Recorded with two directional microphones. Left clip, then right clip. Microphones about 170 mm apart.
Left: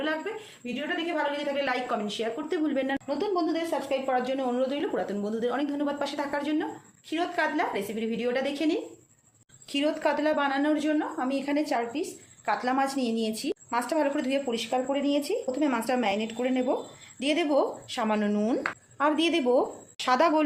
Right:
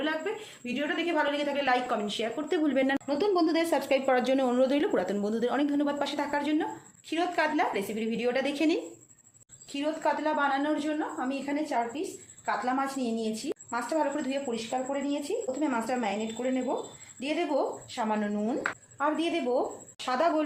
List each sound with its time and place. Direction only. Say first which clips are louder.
0.6 s a woman's voice: even; 20° right (ahead or behind); by 2.3 s 5° right (ahead or behind)
2.5 s a woman's voice: right 3 dB; 25° right (ahead or behind)
9.7 s a woman's voice: left 3 dB; 65° left (ahead or behind)
12.5 s a woman's voice: left 3 dB; 75° left (ahead or behind)